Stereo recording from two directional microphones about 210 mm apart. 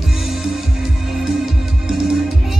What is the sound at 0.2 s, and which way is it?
Music, centre (ahead or behind).